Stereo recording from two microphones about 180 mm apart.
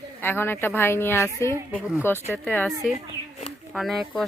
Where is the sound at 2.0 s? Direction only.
15° left (ahead or behind).